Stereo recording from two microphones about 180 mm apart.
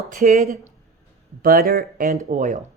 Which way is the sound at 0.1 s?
45° right (ahead or behind).